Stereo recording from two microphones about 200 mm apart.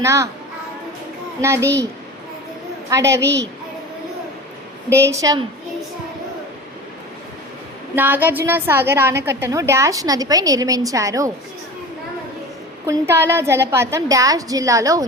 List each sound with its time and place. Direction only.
0.0 s a woman's voice: 15° right (ahead or behind)
1.4 s a woman's voice: 15° right (ahead or behind)
2.9 s a woman's voice: 15° right (ahead or behind)
4.9 s a woman's voice: 15° right (ahead or behind)
7.9 s a woman's voice: 10° right (ahead or behind)
12.8 s a woman's voice: 10° right (ahead or behind)